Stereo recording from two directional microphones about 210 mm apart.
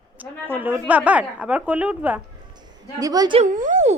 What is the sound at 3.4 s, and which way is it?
Speech, 35° right (ahead or behind).